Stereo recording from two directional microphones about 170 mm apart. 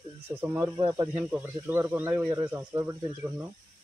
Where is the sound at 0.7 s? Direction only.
30° right (ahead or behind).